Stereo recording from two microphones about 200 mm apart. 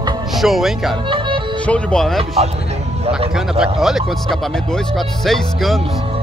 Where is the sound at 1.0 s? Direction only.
25° right (ahead or behind).